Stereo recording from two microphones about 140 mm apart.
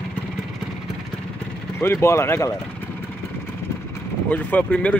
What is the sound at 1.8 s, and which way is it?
Speech, 20° left (ahead or behind).